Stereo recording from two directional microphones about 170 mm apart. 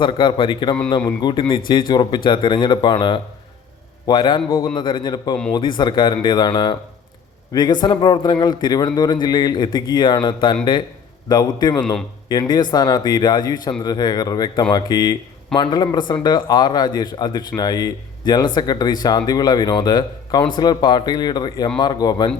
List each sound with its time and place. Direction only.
0.0 s a man's voice: 25° left (ahead or behind)